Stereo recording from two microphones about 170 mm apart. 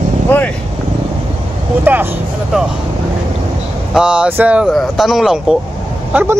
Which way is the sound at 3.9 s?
5° right (ahead or behind).